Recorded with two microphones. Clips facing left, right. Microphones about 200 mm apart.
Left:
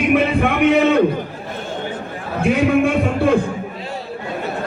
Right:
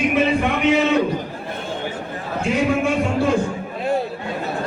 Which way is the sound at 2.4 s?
55° left (ahead or behind).